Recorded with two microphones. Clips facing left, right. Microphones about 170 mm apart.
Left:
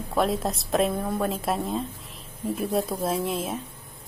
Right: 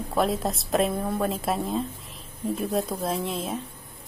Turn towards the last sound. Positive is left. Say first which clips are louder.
# left 2 dB
turn(degrees=0)  # may be behind; listen again after turning